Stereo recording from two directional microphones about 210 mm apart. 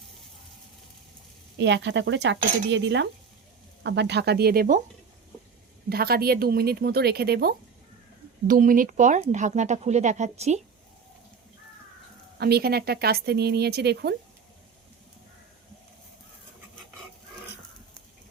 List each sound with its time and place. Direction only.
1.5 s speech: 55° right (ahead or behind)
2.4 s speech: 40° right (ahead or behind)
2.6 s speech: 60° right (ahead or behind)
5.9 s speech: 45° right (ahead or behind)
12.4 s speech: 50° right (ahead or behind)